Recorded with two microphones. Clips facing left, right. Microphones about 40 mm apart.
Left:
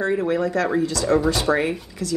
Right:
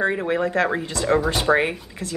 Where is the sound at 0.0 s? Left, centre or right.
Right.